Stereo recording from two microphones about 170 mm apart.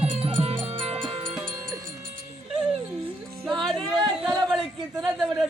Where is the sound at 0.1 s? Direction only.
35° right (ahead or behind).